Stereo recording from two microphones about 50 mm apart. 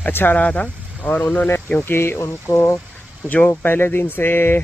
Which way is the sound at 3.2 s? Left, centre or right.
Left.